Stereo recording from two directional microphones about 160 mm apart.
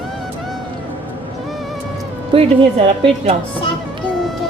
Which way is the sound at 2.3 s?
30° right (ahead or behind).